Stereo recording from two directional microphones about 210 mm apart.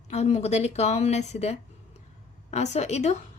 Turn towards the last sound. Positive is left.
turn(degrees=30)  # may be behind; listen again after turning